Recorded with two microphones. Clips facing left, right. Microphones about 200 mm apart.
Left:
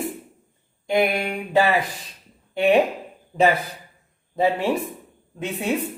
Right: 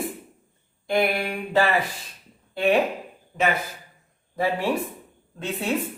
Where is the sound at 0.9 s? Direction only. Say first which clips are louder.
Left 2 dB; 15° left (ahead or behind).